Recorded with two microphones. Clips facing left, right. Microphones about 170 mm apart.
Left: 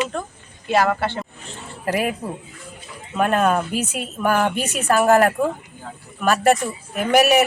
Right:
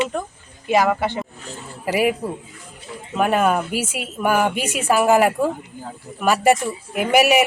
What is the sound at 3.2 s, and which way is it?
A man's voice, 5° right (ahead or behind).